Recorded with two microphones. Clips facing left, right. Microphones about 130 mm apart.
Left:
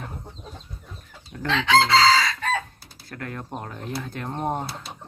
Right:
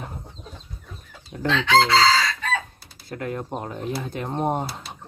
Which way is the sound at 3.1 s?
20° right (ahead or behind).